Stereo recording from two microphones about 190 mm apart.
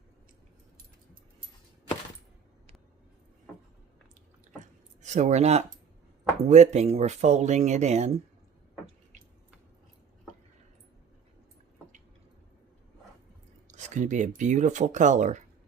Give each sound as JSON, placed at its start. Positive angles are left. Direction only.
{"t": 5.0, "sound": "speech", "side_deg": -40}
{"t": 13.7, "sound": "speech", "side_deg": -40}